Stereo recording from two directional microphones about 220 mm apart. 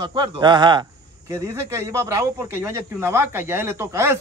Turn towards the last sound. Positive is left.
turn(degrees=-10)  # may be behind; listen again after turning